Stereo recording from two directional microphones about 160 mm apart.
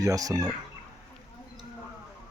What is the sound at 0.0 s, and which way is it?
Speech, 20° right (ahead or behind).